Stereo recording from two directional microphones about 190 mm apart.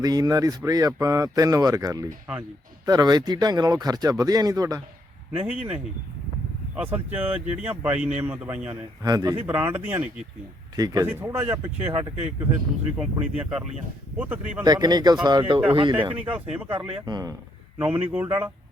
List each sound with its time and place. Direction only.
0.0 s speech: 20° right (ahead or behind)
5.4 s speech: 10° right (ahead or behind)
13.0 s speech: 5° right (ahead or behind)
14.6 s speech: 20° right (ahead or behind)
16.2 s speech: 10° right (ahead or behind)
16.7 s speech: 25° right (ahead or behind)
17.7 s speech: 10° right (ahead or behind)